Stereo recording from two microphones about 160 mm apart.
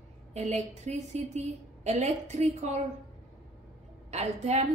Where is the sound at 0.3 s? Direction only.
45° right (ahead or behind).